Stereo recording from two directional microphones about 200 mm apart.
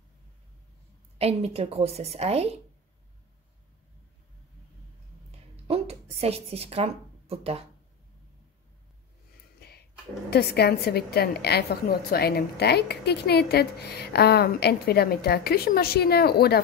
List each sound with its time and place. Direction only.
1.1 s a woman's voice: 30° right (ahead or behind)
5.7 s a woman's voice: 30° right (ahead or behind)
10.3 s a woman's voice: 55° left (ahead or behind)